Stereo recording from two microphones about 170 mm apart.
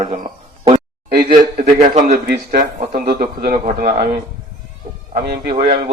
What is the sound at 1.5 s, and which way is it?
A man's voice, 50° right (ahead or behind).